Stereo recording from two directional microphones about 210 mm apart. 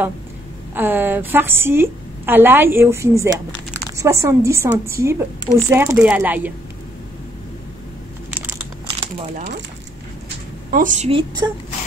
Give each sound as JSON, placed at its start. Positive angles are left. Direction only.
{"t": 0.7, "sound": "a woman's voice", "side_deg": -10}
{"t": 10.7, "sound": "a woman's voice", "side_deg": -40}